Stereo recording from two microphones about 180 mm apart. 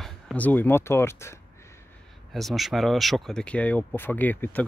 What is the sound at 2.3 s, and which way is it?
Speech, centre (ahead or behind).